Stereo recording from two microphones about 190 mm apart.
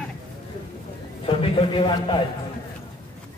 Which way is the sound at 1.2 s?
30° left (ahead or behind).